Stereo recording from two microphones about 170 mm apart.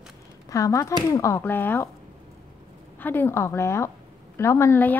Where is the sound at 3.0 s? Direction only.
10° left (ahead or behind).